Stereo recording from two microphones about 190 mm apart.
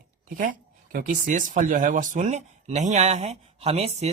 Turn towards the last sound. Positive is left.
turn(degrees=-35)  # may be behind; listen again after turning